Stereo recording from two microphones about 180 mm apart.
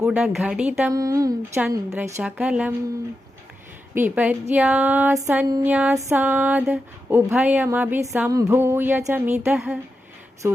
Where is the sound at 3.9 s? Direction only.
10° right (ahead or behind).